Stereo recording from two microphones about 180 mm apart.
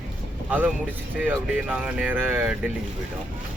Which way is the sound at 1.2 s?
10° right (ahead or behind).